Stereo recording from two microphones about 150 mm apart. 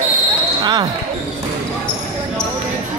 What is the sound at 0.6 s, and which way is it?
Basketball bounce, 30° right (ahead or behind).